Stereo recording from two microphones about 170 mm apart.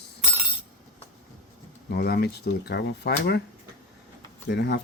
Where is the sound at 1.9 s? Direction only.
75° left (ahead or behind).